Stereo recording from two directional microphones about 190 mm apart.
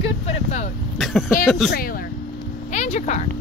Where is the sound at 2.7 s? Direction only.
35° left (ahead or behind).